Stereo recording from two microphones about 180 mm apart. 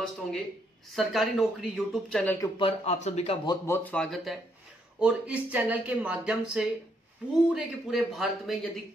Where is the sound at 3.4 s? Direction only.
15° left (ahead or behind).